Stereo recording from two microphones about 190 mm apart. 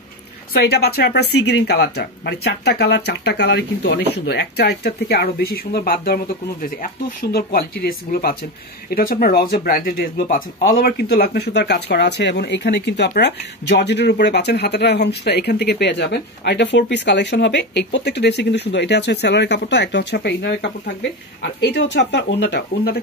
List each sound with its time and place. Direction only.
0.5 s speech: 60° left (ahead or behind)